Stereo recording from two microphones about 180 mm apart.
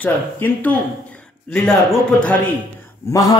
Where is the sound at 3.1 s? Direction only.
20° left (ahead or behind).